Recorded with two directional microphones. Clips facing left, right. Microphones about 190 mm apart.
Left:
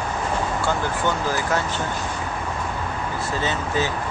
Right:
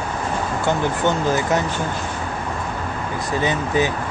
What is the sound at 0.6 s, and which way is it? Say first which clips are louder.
Speech: right 7 dB; 20° right (ahead or behind).